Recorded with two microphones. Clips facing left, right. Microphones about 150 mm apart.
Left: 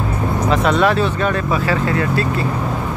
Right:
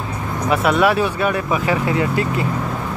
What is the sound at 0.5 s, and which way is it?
Speech, 10° right (ahead or behind).